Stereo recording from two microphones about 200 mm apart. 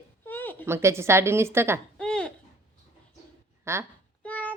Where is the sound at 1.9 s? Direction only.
5° left (ahead or behind).